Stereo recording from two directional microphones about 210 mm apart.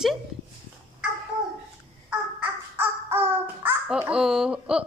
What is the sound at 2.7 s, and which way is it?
Music, 10° right (ahead or behind).